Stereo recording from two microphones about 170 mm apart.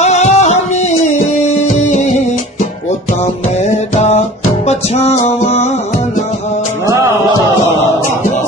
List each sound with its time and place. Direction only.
0.0 s music: 40° left (ahead or behind)
4.0 s music: 40° left (ahead or behind)